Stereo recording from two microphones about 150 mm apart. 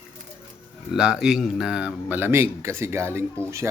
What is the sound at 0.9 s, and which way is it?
A man's voice, 5° right (ahead or behind).